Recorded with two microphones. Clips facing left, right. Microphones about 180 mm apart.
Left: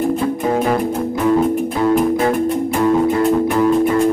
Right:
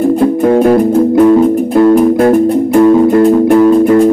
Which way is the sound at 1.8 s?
55° right (ahead or behind).